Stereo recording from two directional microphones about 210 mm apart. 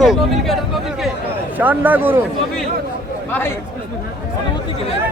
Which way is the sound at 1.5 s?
10° right (ahead or behind).